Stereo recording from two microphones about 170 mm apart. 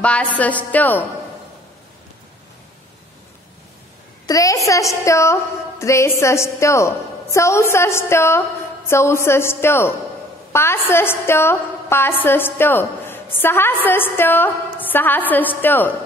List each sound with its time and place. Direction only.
0.0 s a woman's voice: 5° left (ahead or behind)
4.3 s a woman's voice: 20° left (ahead or behind)